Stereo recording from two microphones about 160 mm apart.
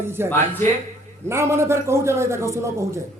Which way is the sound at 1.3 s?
15° right (ahead or behind).